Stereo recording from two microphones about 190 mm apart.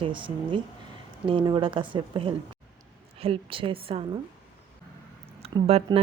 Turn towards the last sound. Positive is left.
turn(degrees=-30)  # may be behind; listen again after turning